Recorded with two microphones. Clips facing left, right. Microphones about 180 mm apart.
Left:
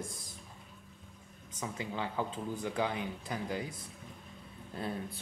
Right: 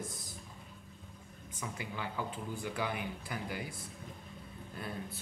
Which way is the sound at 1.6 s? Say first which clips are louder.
Left 4 dB; 25° left (ahead or behind).